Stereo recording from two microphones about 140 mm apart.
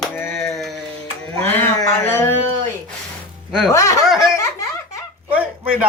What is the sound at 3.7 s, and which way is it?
Snicker, 25° left (ahead or behind).